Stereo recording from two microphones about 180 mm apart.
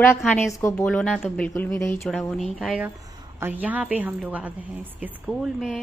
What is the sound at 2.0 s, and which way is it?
A woman's voice, centre (ahead or behind).